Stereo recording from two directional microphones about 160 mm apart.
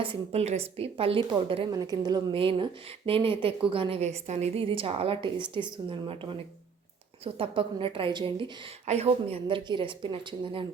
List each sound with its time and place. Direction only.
0.0 s a woman's voice: 35° right (ahead or behind)
1.7 s a woman's voice: 25° right (ahead or behind)
7.3 s a woman's voice: 35° right (ahead or behind)